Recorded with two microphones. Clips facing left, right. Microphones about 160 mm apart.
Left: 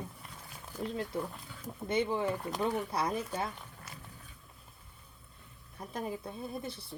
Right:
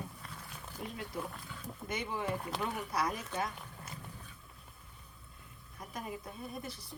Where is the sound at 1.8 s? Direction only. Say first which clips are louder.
Left 6 dB; 30° left (ahead or behind).